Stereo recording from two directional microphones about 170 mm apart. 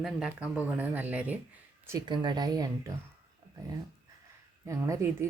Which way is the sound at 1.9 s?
25° right (ahead or behind).